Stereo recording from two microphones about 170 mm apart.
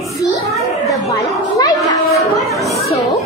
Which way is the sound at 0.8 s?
20° left (ahead or behind).